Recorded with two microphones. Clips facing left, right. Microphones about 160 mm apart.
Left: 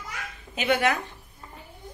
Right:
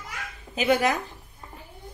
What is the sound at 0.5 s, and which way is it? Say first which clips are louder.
Speech: right 2 dB; 35° right (ahead or behind).